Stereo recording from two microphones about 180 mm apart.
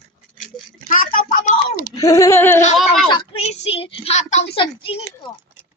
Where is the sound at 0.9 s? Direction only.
50° left (ahead or behind).